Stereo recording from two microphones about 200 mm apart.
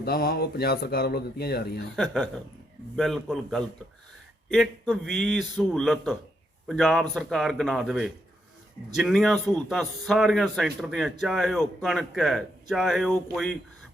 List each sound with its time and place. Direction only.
0.0 s speech: 50° left (ahead or behind)
2.0 s a man's voice: centre (ahead or behind)